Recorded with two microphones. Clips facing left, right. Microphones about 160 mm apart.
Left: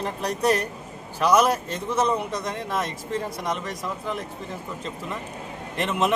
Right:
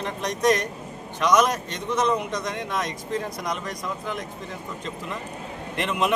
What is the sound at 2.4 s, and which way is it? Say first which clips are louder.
Speech: even; 5° left (ahead or behind).